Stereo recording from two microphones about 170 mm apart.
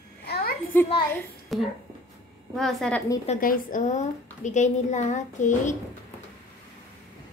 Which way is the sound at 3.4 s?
55° left (ahead or behind).